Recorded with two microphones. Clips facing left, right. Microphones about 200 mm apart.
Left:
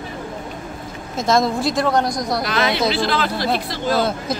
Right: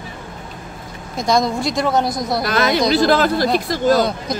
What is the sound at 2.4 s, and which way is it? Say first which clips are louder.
Speech: right 4 dB; 45° right (ahead or behind).